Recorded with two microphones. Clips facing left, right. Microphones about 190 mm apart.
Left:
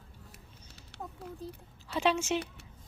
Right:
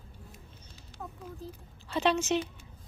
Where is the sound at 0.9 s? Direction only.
70° left (ahead or behind).